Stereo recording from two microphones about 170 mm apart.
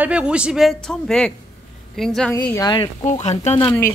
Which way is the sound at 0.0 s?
5° right (ahead or behind).